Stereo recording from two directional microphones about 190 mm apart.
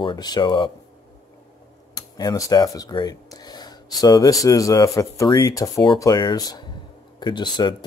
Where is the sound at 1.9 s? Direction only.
20° left (ahead or behind).